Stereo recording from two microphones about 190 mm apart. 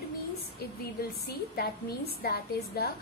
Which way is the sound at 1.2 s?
55° left (ahead or behind).